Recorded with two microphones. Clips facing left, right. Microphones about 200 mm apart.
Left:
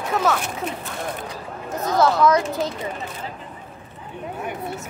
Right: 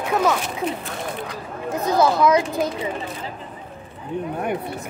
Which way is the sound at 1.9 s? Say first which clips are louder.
Even; 15° right (ahead or behind).